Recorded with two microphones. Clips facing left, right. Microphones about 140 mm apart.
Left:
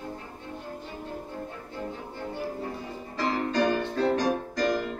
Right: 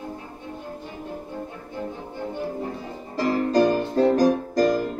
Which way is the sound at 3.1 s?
40° right (ahead or behind).